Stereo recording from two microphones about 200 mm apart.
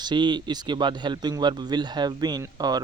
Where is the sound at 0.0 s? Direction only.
20° right (ahead or behind).